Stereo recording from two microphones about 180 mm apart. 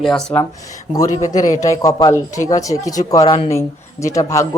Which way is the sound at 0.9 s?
20° left (ahead or behind).